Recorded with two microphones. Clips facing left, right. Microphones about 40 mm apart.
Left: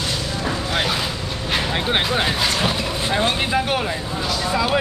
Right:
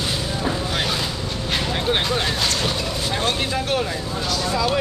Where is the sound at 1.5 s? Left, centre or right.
Centre.